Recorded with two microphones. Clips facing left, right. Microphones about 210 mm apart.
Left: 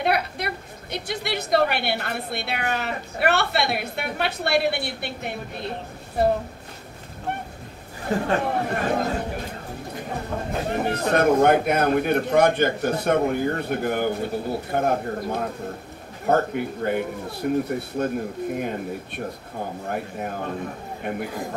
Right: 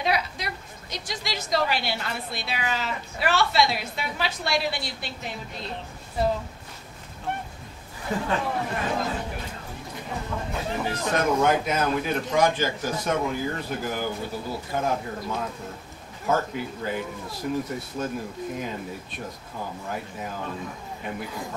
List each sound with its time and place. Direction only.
0.0 s a woman's voice: 60° left (ahead or behind)
8.2 s a man's voice: 55° left (ahead or behind)
10.3 s a sound: 40° left (ahead or behind)
10.7 s a man's voice: 60° left (ahead or behind)
19.5 s a man's voice: 50° left (ahead or behind)